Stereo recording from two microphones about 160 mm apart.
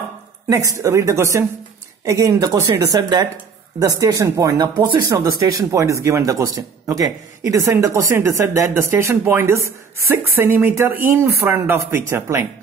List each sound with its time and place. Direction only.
0.5 s speech: 20° right (ahead or behind)